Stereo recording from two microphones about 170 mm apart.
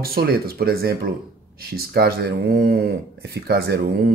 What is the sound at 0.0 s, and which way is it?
Speech, 65° right (ahead or behind).